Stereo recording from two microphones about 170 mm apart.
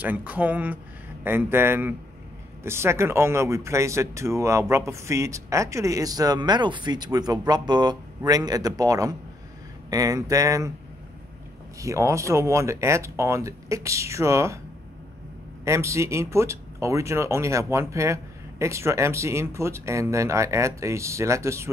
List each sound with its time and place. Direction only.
0.0 s speech: 10° right (ahead or behind)
11.8 s speech: 15° right (ahead or behind)
15.6 s speech: 15° right (ahead or behind)